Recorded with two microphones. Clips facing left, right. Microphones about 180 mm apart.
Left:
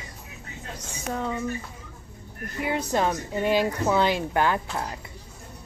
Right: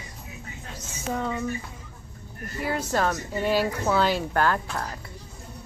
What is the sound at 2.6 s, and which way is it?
Speech, 15° left (ahead or behind).